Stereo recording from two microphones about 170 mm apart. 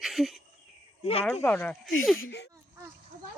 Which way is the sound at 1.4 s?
10° left (ahead or behind).